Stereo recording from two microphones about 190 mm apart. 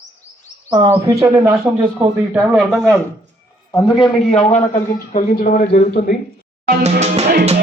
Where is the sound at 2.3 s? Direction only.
5° right (ahead or behind).